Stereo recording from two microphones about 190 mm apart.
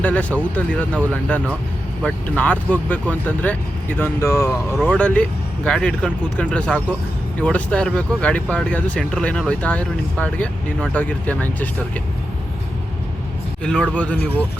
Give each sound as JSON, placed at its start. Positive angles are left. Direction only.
{"t": 0.0, "sound": "speech", "side_deg": 5}
{"t": 13.7, "sound": "speech", "side_deg": 5}